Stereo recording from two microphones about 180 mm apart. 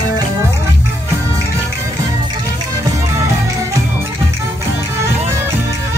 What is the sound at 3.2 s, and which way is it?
Music, 15° right (ahead or behind).